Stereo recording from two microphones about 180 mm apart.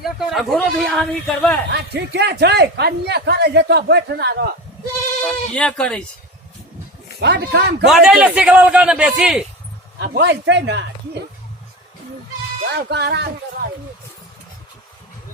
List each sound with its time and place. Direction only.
0.0 s a man's voice: centre (ahead or behind)
1.7 s a man's voice: 65° right (ahead or behind)
5.2 s a man's voice: 5° left (ahead or behind)
7.2 s a man's voice: 65° right (ahead or behind)
7.9 s a man's voice: centre (ahead or behind)
10.0 s speech: 75° right (ahead or behind)
12.7 s a man's voice: 65° right (ahead or behind)